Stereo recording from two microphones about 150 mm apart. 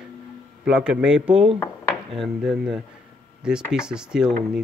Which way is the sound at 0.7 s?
5° right (ahead or behind).